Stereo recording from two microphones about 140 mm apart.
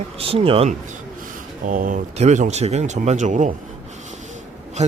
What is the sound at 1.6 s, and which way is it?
Speech, 70° right (ahead or behind).